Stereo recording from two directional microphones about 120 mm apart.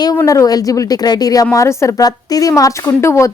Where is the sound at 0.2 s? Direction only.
25° left (ahead or behind).